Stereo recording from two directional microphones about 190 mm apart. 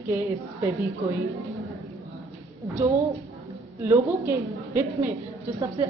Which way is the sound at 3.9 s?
15° right (ahead or behind).